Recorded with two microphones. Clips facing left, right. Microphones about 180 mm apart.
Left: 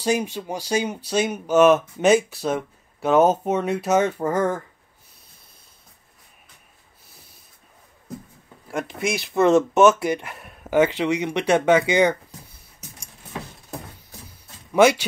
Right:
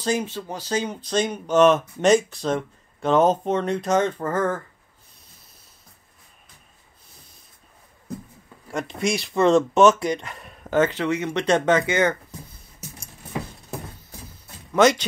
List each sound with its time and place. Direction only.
0.0 s speech: 15° left (ahead or behind)
8.6 s speech: 5° left (ahead or behind)
14.7 s speech: 10° left (ahead or behind)